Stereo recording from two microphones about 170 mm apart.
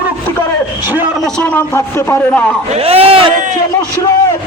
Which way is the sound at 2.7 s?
35° right (ahead or behind).